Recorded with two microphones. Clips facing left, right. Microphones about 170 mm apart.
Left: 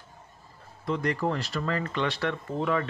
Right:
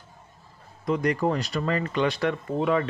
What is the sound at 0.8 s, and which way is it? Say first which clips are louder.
Speech: right 4 dB; 15° right (ahead or behind).